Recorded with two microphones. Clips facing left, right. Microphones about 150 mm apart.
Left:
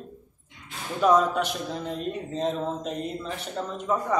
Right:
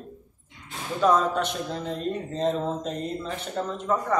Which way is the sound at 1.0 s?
10° left (ahead or behind).